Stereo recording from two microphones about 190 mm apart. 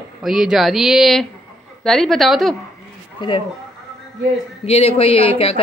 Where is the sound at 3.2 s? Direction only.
25° left (ahead or behind).